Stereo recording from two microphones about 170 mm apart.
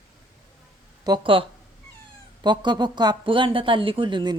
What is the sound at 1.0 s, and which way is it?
A woman's voice, 30° right (ahead or behind).